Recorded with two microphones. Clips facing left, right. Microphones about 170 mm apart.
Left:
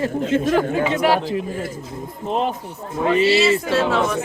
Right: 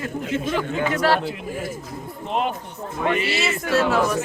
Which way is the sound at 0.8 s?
20° left (ahead or behind).